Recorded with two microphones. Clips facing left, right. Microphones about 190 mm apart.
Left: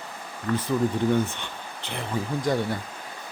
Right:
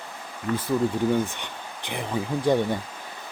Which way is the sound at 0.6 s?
10° right (ahead or behind).